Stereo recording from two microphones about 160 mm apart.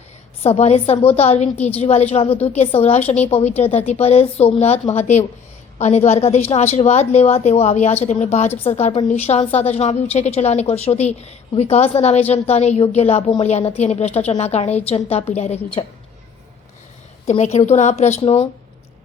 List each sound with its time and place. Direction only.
0.4 s a woman's voice: 40° left (ahead or behind)
2.3 s a woman's voice: 10° left (ahead or behind)
2.6 s a woman's voice: 40° left (ahead or behind)
17.2 s a woman's voice: 45° left (ahead or behind)